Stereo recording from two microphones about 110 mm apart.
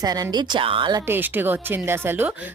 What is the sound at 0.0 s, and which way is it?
Speech, 35° right (ahead or behind).